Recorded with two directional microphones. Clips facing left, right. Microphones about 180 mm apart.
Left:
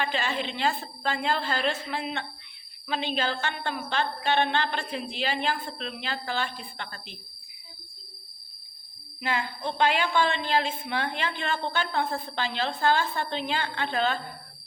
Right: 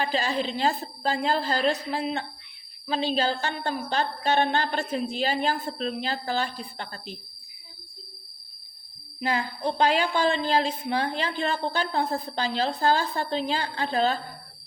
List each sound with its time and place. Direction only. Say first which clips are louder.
0.0 s a woman's voice: right 3 dB; 35° right (ahead or behind)
9.2 s a woman's voice: right 3 dB; 40° right (ahead or behind)